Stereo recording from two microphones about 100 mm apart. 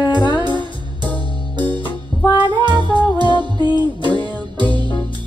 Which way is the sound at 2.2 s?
50° left (ahead or behind).